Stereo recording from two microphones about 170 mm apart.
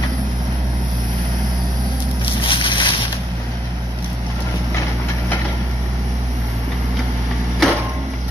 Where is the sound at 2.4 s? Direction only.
30° left (ahead or behind).